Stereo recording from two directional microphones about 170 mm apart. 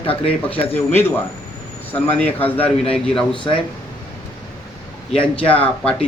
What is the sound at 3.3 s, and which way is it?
Speech, 30° left (ahead or behind).